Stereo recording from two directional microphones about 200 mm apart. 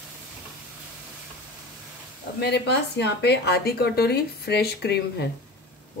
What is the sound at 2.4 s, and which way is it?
Speech, 55° left (ahead or behind).